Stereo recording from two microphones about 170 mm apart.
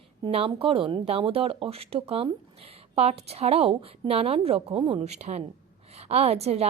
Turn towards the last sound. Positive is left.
turn(degrees=-40)  # may be behind; listen again after turning